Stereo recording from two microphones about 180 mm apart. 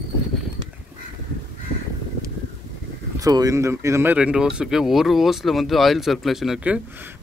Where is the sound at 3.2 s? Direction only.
20° right (ahead or behind); by 6.7 s centre (ahead or behind).